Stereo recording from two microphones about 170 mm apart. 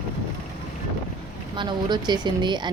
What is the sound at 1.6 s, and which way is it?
A woman's voice, 25° right (ahead or behind).